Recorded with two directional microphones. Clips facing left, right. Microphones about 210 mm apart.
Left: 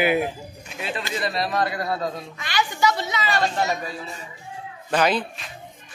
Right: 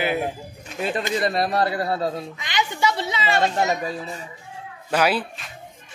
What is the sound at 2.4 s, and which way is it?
A woman's voice, 20° right (ahead or behind).